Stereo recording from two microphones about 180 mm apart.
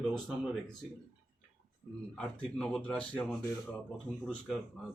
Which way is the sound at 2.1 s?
5° left (ahead or behind).